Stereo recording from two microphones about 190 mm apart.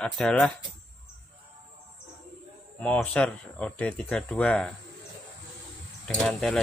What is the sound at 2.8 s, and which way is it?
Speech, 5° left (ahead or behind).